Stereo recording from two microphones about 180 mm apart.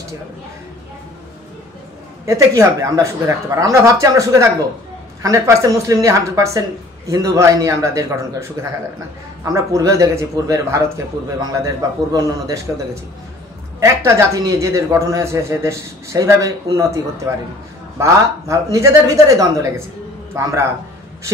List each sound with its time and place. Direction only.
2.2 s a man's voice: 15° right (ahead or behind)